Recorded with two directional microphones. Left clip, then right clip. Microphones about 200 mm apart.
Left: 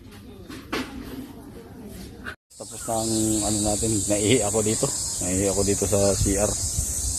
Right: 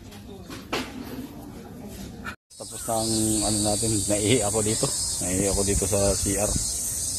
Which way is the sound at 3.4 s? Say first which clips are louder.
Even; 5° left (ahead or behind).